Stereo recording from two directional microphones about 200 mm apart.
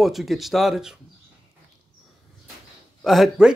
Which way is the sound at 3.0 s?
Centre (ahead or behind).